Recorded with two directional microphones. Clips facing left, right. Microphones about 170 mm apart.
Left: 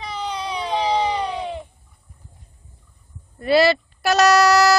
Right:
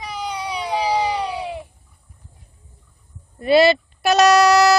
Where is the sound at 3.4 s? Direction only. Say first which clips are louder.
Right 2 dB; 20° right (ahead or behind).